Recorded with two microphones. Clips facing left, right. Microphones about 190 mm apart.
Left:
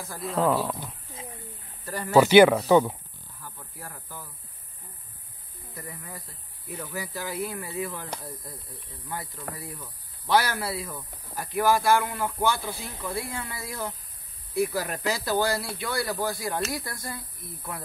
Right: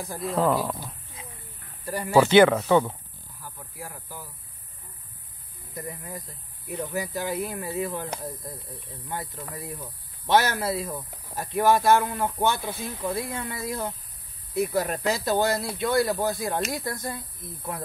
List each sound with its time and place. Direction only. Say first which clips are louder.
0.2 s speech: right 1 dB; centre (ahead or behind)
1.9 s speech: right 2 dB; 10° right (ahead or behind)
2.1 s speech: left 1 dB; 10° left (ahead or behind)
3.4 s snake: right 3 dB; 10° right (ahead or behind)
5.8 s speech: right 5 dB; 20° right (ahead or behind)
9.1 s speech: right 1 dB; 20° right (ahead or behind)